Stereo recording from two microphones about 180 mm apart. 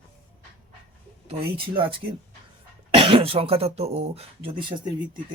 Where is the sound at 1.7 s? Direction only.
30° right (ahead or behind).